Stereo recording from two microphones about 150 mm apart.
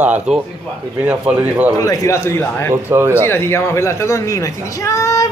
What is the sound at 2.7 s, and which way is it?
Speech, 15° right (ahead or behind).